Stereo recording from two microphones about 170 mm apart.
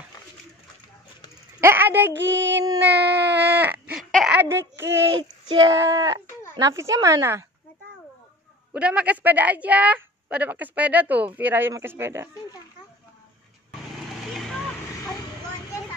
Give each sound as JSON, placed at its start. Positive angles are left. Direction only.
{"t": 1.6, "sound": "a woman's voice", "side_deg": -15}
{"t": 2.1, "sound": "female singing", "side_deg": -90}
{"t": 2.8, "sound": "baby cry", "side_deg": -85}
{"t": 3.9, "sound": "a sound", "side_deg": 0}
{"t": 4.4, "sound": "speech", "side_deg": -15}
{"t": 8.7, "sound": "a woman's voice", "side_deg": -5}
{"t": 14.3, "sound": "vehicle", "side_deg": 0}